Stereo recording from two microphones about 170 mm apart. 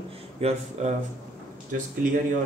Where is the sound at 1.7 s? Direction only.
55° right (ahead or behind).